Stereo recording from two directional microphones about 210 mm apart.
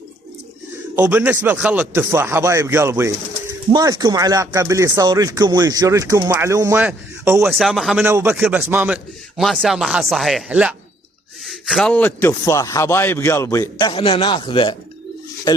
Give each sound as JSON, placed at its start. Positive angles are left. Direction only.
{"t": 0.9, "sound": "speech", "side_deg": -10}
{"t": 7.4, "sound": "a man's voice", "side_deg": 0}